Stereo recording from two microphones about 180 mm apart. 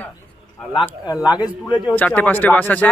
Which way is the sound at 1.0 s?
25° left (ahead or behind).